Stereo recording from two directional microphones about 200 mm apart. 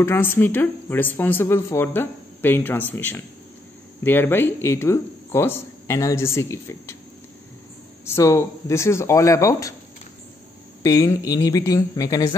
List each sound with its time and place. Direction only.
0.0 s speech: 10° left (ahead or behind)
8.0 s speech: 15° left (ahead or behind)
10.8 s speech: 15° left (ahead or behind)